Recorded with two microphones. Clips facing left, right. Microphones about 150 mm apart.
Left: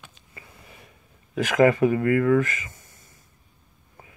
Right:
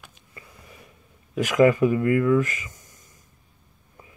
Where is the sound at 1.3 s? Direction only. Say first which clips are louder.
Right 1 dB; 45° left (ahead or behind).